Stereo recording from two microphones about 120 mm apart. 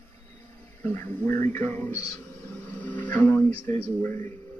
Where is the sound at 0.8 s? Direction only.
15° left (ahead or behind).